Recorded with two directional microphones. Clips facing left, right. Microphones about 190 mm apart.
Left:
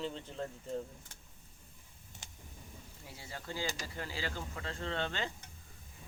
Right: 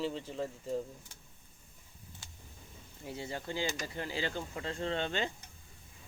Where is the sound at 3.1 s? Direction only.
20° right (ahead or behind).